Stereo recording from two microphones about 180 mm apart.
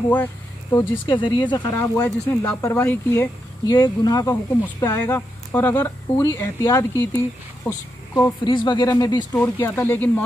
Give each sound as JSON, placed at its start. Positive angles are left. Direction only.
{"t": 0.1, "sound": "speech", "side_deg": 15}
{"t": 1.0, "sound": "speech", "side_deg": 25}
{"t": 3.6, "sound": "a woman's voice", "side_deg": 20}
{"t": 8.5, "sound": "speech", "side_deg": 25}